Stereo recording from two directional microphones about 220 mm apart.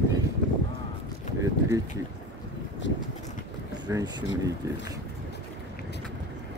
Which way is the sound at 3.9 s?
15° right (ahead or behind).